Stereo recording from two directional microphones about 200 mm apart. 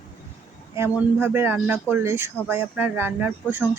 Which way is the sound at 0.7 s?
10° right (ahead or behind).